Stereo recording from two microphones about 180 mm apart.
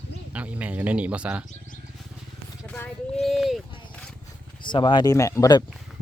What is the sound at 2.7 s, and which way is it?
Speech, 5° left (ahead or behind).